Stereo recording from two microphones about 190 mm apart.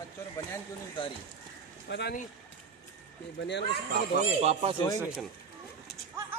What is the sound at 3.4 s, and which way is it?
Speech, 65° left (ahead or behind).